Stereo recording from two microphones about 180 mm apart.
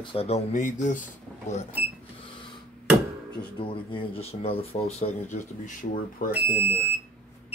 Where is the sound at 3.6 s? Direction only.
30° left (ahead or behind); by 6.3 s 45° left (ahead or behind).